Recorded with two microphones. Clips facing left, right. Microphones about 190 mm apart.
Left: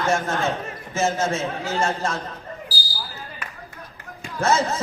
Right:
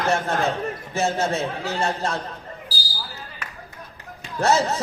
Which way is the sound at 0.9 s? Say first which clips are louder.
Left 1 dB; 65° right (ahead or behind).